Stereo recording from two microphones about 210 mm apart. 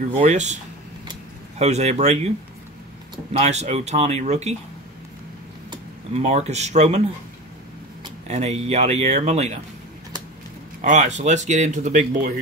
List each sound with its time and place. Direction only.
0.1 s speech: 35° right (ahead or behind)
1.6 s speech: 30° right (ahead or behind)
3.3 s speech: 30° right (ahead or behind)
5.7 s speech: 30° right (ahead or behind)
8.3 s speech: 30° right (ahead or behind)
10.8 s speech: 35° right (ahead or behind)